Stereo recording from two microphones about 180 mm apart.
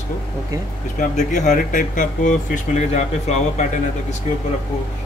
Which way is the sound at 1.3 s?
45° left (ahead or behind).